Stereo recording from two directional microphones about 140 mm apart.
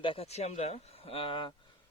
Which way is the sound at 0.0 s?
40° left (ahead or behind).